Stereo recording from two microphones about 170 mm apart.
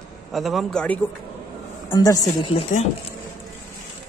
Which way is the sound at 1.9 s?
20° left (ahead or behind).